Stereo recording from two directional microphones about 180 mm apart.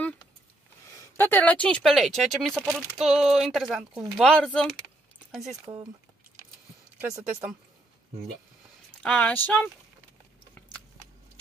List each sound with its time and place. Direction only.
0.8 s speech: 15° left (ahead or behind); by 5.6 s centre (ahead or behind)
7.0 s speech: 15° right (ahead or behind)
9.0 s speech: 5° left (ahead or behind)